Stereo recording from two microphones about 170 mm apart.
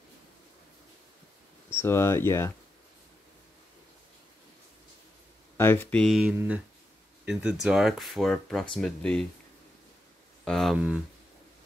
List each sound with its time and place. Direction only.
1.8 s speech: 15° left (ahead or behind)
5.6 s speech: 15° left (ahead or behind)
10.4 s speech: centre (ahead or behind)